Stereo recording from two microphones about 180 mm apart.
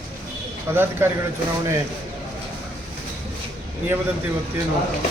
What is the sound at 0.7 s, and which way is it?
Speech, 10° right (ahead or behind).